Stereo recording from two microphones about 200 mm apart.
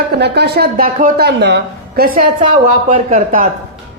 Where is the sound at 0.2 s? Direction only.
55° right (ahead or behind).